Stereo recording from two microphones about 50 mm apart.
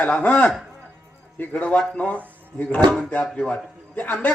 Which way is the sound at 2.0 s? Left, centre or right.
Left.